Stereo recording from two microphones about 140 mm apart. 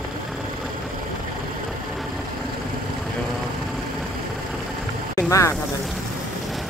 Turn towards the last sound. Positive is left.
turn(degrees=20)  # may be behind; listen again after turning